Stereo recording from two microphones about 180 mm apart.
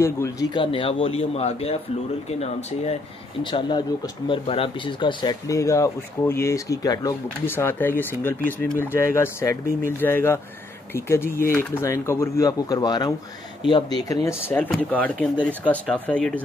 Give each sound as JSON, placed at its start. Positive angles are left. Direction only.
{"t": 0.0, "sound": "speech", "side_deg": 15}
{"t": 0.6, "sound": "speech", "side_deg": 30}
{"t": 3.4, "sound": "speech", "side_deg": 25}
{"t": 11.2, "sound": "speech", "side_deg": 55}
{"t": 11.5, "sound": "speech", "side_deg": 15}